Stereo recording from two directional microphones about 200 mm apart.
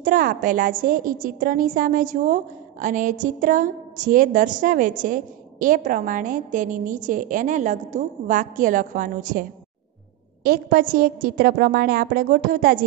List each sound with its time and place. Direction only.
0.0 s a woman's voice: 45° right (ahead or behind)